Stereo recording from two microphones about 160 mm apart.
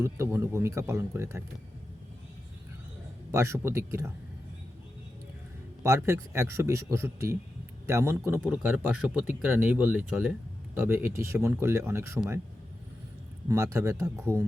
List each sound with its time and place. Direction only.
0.0 s speech: 15° right (ahead or behind)
3.3 s speech: 15° right (ahead or behind)
5.8 s speech: 15° right (ahead or behind)
13.5 s speech: 20° right (ahead or behind)